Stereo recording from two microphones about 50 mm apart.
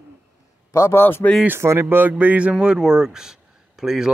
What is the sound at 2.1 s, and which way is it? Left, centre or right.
Speech, right.